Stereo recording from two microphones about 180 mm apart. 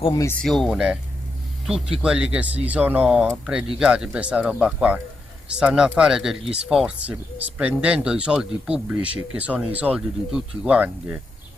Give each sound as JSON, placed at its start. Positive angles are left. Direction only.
{"t": 0.0, "sound": "speech", "side_deg": 20}
{"t": 0.4, "sound": "speech", "side_deg": 0}